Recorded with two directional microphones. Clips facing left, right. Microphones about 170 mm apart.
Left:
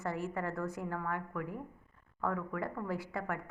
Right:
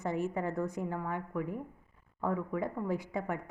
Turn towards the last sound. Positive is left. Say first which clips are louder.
# right 3 dB
turn(degrees=-20)  # may be behind; listen again after turning